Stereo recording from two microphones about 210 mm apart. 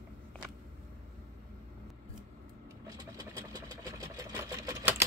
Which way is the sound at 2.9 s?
20° right (ahead or behind).